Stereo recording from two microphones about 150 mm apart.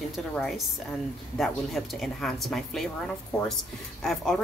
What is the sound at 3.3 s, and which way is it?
Speech, 20° left (ahead or behind).